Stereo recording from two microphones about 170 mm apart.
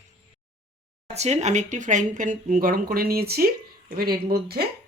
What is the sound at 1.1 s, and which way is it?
Speech, 40° right (ahead or behind).